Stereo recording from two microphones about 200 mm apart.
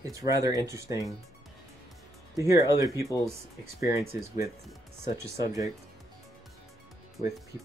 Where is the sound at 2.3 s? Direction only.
15° right (ahead or behind).